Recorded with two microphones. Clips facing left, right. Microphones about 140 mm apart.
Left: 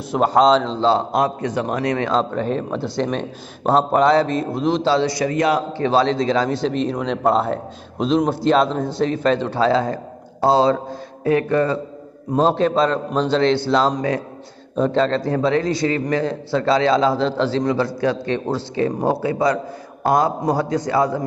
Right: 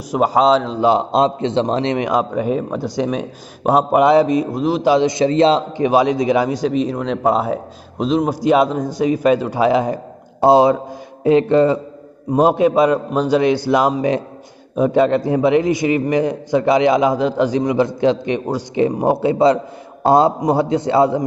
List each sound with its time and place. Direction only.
0.1 s a man's voice: 5° right (ahead or behind)
4.8 s a man's voice: 20° right (ahead or behind)